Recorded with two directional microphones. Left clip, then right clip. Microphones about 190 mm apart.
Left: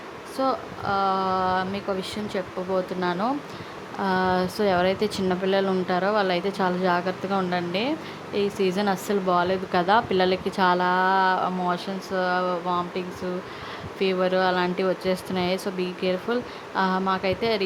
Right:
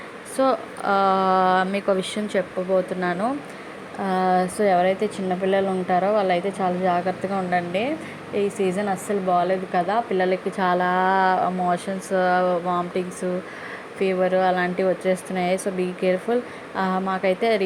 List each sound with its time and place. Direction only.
0.3 s speech: 15° right (ahead or behind)
2.7 s a woman's voice: centre (ahead or behind)
14.0 s a woman's voice: 5° left (ahead or behind)